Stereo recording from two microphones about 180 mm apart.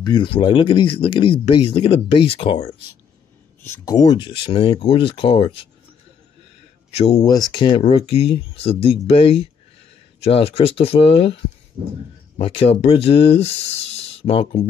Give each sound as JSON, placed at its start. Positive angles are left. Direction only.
{"t": 0.0, "sound": "speech", "side_deg": 25}
{"t": 3.6, "sound": "speech", "side_deg": 15}
{"t": 6.9, "sound": "speech", "side_deg": 35}
{"t": 7.2, "sound": "speech", "side_deg": 20}
{"t": 11.8, "sound": "speech", "side_deg": -50}
{"t": 12.4, "sound": "speech", "side_deg": 30}